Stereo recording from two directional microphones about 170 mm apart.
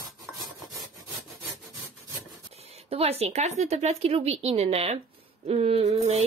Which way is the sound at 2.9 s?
35° right (ahead or behind).